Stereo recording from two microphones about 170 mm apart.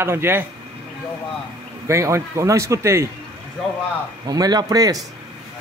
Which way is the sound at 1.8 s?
15° right (ahead or behind).